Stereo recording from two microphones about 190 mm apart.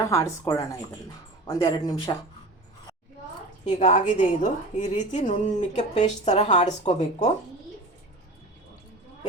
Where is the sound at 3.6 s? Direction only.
40° left (ahead or behind).